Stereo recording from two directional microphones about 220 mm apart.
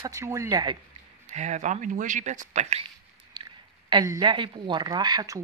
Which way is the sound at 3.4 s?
20° right (ahead or behind).